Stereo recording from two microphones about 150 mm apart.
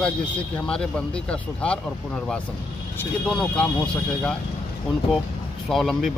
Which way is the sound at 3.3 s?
5° left (ahead or behind).